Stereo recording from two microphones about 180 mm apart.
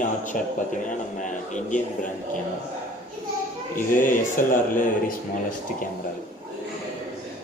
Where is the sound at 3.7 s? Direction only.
50° left (ahead or behind).